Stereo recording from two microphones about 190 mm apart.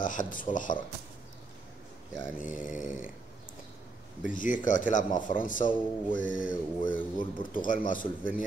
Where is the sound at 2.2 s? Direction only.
45° left (ahead or behind).